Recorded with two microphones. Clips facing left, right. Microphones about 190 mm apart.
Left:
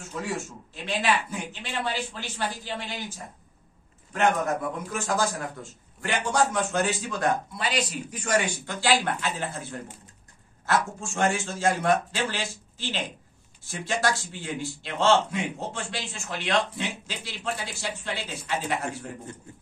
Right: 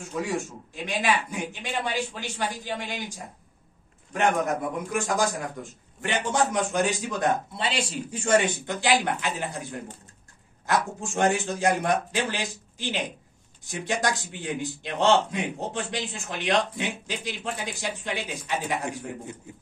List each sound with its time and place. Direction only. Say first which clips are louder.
0.8 s a man's voice: even; 15° right (ahead or behind)
4.1 s a man's voice: even; 15° right (ahead or behind)